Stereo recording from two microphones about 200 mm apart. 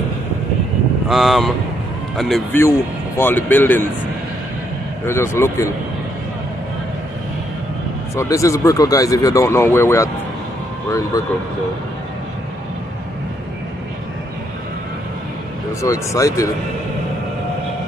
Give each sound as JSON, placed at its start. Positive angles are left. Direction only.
{"t": 1.0, "sound": "speech", "side_deg": 0}
{"t": 5.0, "sound": "speech", "side_deg": 15}
{"t": 8.2, "sound": "speech", "side_deg": 15}
{"t": 15.8, "sound": "speech", "side_deg": 15}